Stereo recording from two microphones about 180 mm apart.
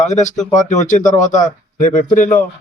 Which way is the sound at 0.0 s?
40° left (ahead or behind).